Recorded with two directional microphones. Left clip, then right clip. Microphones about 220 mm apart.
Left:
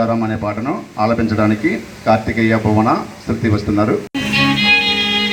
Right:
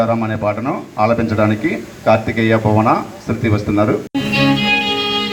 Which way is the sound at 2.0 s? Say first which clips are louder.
Right 1 dB; 25° right (ahead or behind).